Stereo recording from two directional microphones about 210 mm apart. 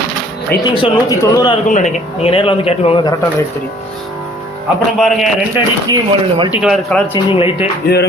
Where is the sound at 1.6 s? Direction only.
35° left (ahead or behind).